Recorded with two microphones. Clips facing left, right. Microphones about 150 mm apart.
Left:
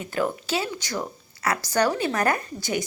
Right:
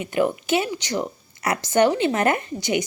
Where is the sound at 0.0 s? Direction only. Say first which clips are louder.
Right 4 dB; 15° right (ahead or behind).